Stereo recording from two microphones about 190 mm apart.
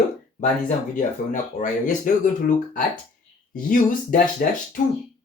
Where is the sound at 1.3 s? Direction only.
40° left (ahead or behind).